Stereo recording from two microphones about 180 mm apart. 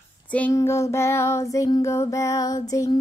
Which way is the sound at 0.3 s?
10° left (ahead or behind).